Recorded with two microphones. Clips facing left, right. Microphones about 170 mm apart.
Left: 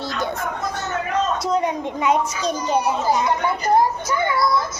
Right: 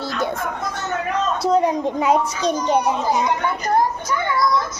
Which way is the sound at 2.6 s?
5° left (ahead or behind).